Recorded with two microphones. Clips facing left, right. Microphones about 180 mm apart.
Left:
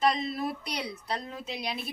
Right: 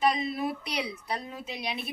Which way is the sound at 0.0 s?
5° right (ahead or behind).